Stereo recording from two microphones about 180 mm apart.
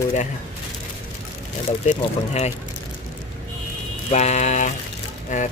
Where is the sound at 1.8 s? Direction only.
40° left (ahead or behind).